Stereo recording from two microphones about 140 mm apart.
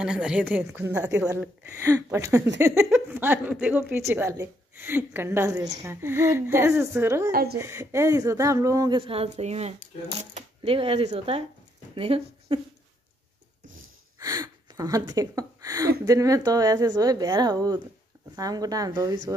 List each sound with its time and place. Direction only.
0.0 s a woman's voice: 5° right (ahead or behind); by 12.5 s 40° right (ahead or behind)
14.2 s speech: 25° right (ahead or behind)